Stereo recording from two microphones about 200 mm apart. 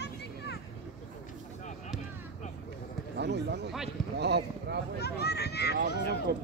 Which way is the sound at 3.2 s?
60° right (ahead or behind).